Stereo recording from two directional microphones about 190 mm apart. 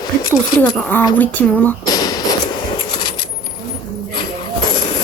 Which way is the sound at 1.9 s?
20° left (ahead or behind).